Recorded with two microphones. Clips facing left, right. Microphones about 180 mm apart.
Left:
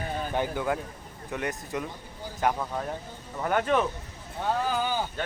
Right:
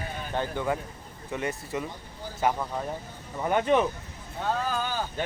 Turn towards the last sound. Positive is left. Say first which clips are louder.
# left 2 dB
turn(degrees=15)  # may be behind; listen again after turning